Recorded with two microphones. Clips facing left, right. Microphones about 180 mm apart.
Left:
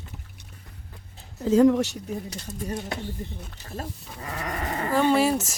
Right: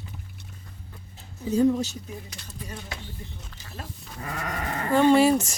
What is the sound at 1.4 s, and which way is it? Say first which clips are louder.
Speech: left 4 dB; 90° left.